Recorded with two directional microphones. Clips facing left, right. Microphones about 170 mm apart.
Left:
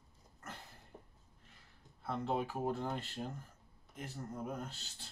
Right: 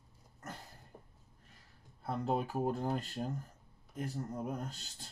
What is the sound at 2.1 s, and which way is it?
Speech, 40° right (ahead or behind).